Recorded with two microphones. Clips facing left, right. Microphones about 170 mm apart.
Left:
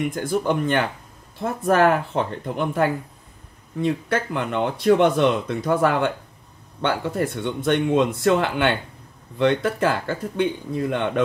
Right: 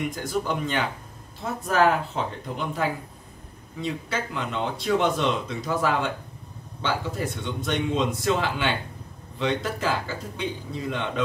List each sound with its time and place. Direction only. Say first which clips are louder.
0.1 s speech: left 5 dB; 55° left (ahead or behind)